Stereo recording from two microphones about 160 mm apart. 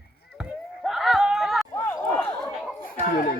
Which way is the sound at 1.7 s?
15° left (ahead or behind).